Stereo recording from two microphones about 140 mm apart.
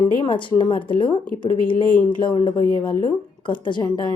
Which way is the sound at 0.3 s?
35° left (ahead or behind).